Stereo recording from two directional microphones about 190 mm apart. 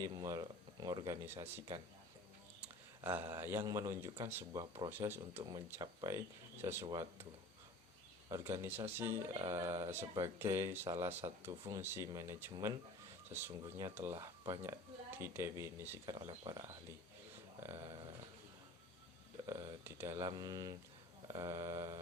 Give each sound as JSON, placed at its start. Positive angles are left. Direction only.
{"t": 0.0, "sound": "speech", "side_deg": -20}
{"t": 2.6, "sound": "a sound", "side_deg": -10}
{"t": 3.4, "sound": "speech", "side_deg": -15}
{"t": 4.6, "sound": "mantra", "side_deg": -25}
{"t": 4.9, "sound": "speech", "side_deg": -10}
{"t": 6.8, "sound": "mantra", "side_deg": -20}
{"t": 8.3, "sound": "speech", "side_deg": -15}
{"t": 14.1, "sound": "mantra", "side_deg": -20}
{"t": 15.2, "sound": "speech", "side_deg": -15}
{"t": 16.0, "sound": "mantra", "side_deg": -25}
{"t": 17.6, "sound": "a sound", "side_deg": -20}
{"t": 19.5, "sound": "speech", "side_deg": -20}
{"t": 20.1, "sound": "mantra", "side_deg": -20}